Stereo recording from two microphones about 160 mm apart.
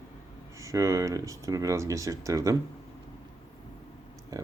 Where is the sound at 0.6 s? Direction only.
20° right (ahead or behind).